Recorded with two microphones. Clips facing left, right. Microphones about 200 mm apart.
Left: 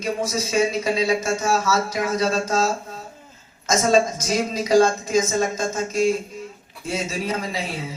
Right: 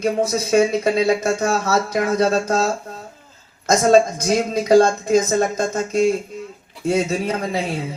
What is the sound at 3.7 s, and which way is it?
Speech, 60° right (ahead or behind).